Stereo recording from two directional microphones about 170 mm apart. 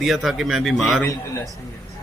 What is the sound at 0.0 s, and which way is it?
Speech, centre (ahead or behind).